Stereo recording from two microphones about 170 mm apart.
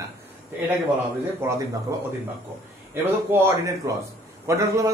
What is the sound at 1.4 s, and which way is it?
Speech, 15° right (ahead or behind).